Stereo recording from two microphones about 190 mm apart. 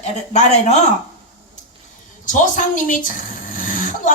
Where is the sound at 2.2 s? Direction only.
45° left (ahead or behind).